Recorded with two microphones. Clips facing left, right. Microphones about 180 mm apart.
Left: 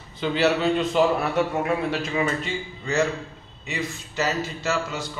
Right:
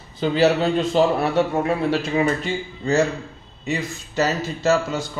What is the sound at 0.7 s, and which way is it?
A man's voice, 30° right (ahead or behind).